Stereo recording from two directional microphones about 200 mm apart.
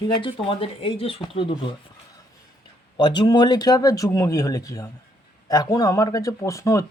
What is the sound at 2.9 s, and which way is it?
Speech, 20° left (ahead or behind).